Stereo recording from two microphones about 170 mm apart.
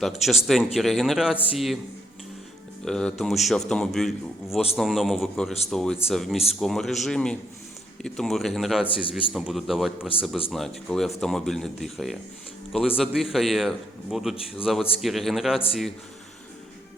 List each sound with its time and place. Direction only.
0.0 s a man's voice: centre (ahead or behind)
2.8 s a man's voice: 5° left (ahead or behind)
8.9 s a man's voice: 30° left (ahead or behind)
9.3 s a man's voice: centre (ahead or behind)